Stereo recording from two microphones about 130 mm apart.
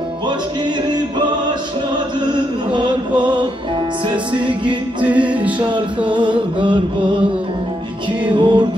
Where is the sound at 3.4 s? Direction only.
40° right (ahead or behind).